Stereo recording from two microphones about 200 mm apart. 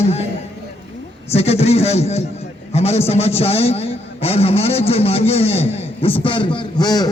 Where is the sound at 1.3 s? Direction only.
30° left (ahead or behind).